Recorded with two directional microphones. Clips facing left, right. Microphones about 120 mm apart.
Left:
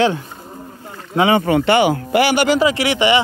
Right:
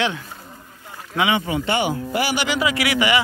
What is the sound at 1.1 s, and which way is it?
Speech, 40° left (ahead or behind).